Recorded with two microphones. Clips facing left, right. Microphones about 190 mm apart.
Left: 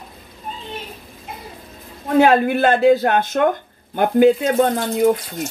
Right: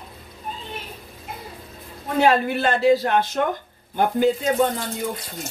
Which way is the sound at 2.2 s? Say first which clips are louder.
Left 4 dB; 55° left (ahead or behind).